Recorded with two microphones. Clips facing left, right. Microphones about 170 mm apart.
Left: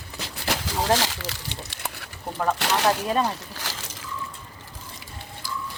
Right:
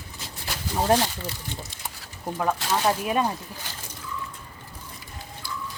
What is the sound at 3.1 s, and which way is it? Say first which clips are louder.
Speech: left 1 dB; 15° right (ahead or behind).